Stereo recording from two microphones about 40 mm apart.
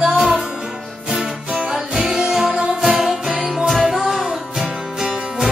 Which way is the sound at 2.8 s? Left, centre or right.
Centre.